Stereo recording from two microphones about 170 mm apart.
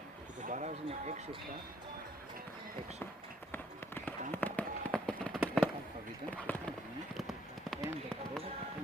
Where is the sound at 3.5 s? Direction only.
10° left (ahead or behind).